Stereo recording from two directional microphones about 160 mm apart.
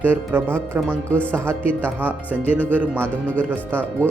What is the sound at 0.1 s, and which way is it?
Speech, 10° right (ahead or behind).